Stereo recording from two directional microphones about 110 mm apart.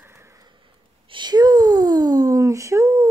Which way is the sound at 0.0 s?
25° right (ahead or behind).